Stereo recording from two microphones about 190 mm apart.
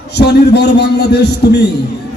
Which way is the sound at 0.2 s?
60° left (ahead or behind).